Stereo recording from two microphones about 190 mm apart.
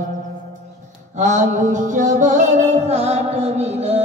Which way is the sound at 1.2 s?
40° right (ahead or behind).